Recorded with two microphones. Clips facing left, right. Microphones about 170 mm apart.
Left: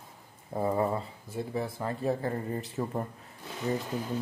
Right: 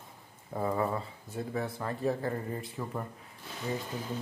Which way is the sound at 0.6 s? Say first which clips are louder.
Left 3 dB; 25° left (ahead or behind).